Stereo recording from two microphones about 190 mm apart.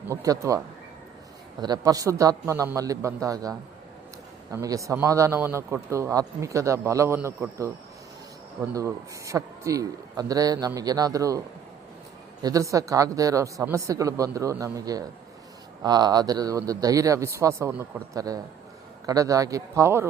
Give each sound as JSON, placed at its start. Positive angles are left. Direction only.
{"t": 0.1, "sound": "speech", "side_deg": -15}
{"t": 1.6, "sound": "speech", "side_deg": -20}
{"t": 8.7, "sound": "speech", "side_deg": -15}